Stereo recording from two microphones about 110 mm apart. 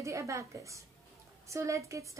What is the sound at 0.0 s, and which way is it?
A woman's voice, 25° right (ahead or behind).